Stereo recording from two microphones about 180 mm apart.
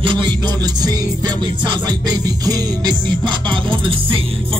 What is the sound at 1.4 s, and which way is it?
Music, 25° right (ahead or behind).